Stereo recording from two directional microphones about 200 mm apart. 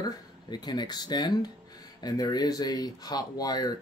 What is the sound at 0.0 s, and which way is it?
Speech, 20° left (ahead or behind).